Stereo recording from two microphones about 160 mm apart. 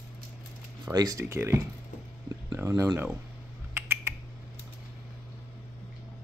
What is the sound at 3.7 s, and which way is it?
Typing, 15° right (ahead or behind).